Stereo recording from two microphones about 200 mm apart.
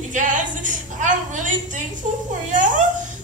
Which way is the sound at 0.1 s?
40° right (ahead or behind).